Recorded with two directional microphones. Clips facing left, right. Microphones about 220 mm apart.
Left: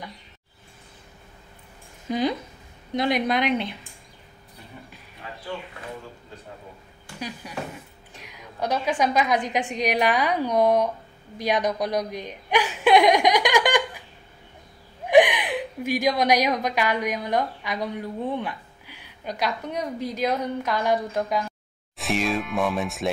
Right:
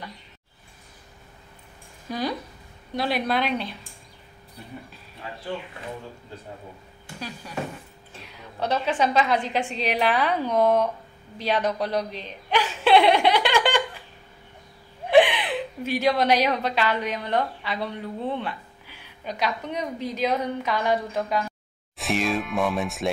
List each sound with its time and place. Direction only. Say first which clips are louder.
2.0 s a woman's voice: left 4 dB; 20° left (ahead or behind)
7.2 s a woman's voice: even; 15° left (ahead or behind)
11.3 s chuckle: left 1 dB; 15° left (ahead or behind)
15.0 s a woman's voice: left 1 dB; 15° left (ahead or behind)
21.9 s speech: even; centre (ahead or behind)